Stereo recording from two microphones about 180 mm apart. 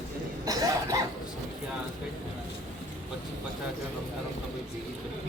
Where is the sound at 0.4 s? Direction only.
20° right (ahead or behind).